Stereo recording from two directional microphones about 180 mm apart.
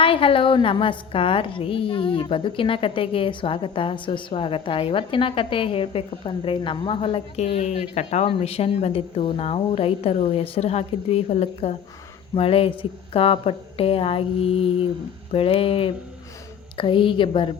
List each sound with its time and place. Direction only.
0.0 s a woman's voice: 30° left (ahead or behind)